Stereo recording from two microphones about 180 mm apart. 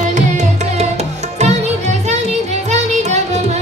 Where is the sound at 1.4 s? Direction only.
40° right (ahead or behind).